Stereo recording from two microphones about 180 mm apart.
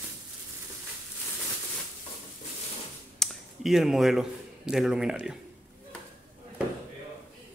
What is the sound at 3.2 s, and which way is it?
Speech, centre (ahead or behind).